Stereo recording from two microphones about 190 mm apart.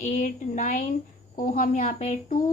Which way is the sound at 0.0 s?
40° left (ahead or behind).